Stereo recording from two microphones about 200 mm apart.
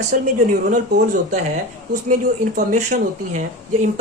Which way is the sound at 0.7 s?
40° right (ahead or behind).